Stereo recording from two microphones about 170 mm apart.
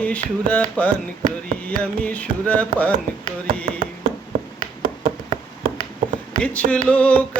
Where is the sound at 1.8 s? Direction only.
10° left (ahead or behind).